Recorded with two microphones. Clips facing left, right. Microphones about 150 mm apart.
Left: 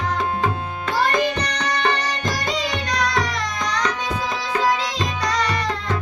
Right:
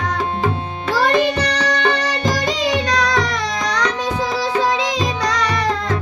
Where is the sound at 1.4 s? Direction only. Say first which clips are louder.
Right 4 dB; 85° right.